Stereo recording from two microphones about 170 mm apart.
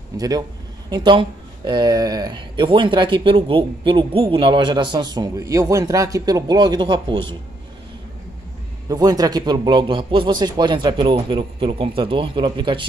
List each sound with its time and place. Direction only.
0.1 s a man's voice: 20° right (ahead or behind)
8.8 s speech: 20° right (ahead or behind)